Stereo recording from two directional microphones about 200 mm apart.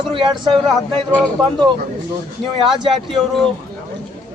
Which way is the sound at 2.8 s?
Centre (ahead or behind).